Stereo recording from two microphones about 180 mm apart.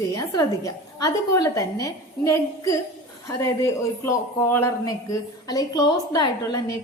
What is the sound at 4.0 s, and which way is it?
A woman's voice, 15° left (ahead or behind).